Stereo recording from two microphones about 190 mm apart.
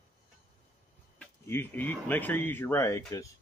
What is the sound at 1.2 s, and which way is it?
Speech, 10° left (ahead or behind).